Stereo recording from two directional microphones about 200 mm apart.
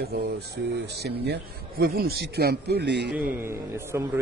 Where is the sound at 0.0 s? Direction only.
50° right (ahead or behind).